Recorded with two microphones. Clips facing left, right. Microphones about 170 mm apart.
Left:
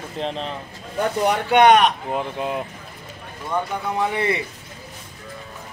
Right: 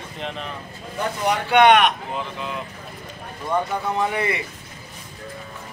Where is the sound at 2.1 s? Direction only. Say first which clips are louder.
Left 5 dB; 50° left (ahead or behind).